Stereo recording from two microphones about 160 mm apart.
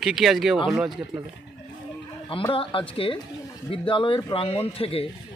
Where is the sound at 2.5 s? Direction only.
35° left (ahead or behind).